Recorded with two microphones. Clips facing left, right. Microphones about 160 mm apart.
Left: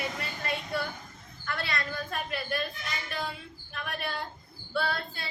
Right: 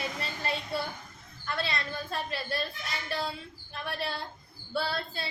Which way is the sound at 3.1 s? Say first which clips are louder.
Right 5 dB; 35° right (ahead or behind).